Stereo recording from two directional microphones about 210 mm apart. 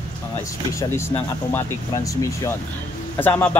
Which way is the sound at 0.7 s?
10° left (ahead or behind).